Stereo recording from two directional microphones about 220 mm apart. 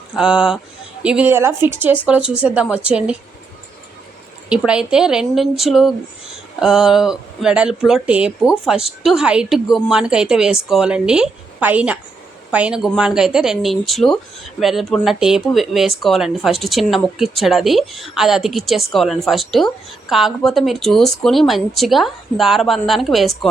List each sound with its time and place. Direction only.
0.2 s a woman's voice: 5° right (ahead or behind)
4.4 s speech: 5° right (ahead or behind)